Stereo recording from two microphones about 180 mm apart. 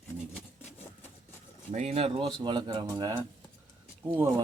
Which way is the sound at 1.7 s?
35° right (ahead or behind).